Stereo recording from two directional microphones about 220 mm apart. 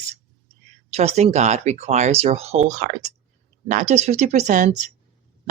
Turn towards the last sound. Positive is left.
turn(degrees=-35)  # may be behind; listen again after turning